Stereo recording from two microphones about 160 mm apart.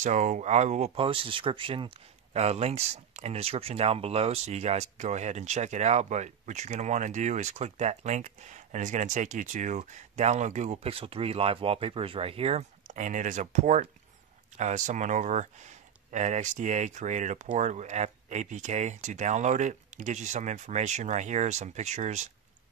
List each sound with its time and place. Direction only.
0.0 s speech: 50° right (ahead or behind)